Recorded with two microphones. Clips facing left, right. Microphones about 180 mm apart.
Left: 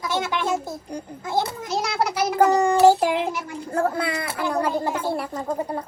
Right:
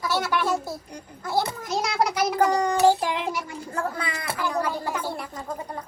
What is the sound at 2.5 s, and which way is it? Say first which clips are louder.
Child singing: left 4 dB; 10° left (ahead or behind).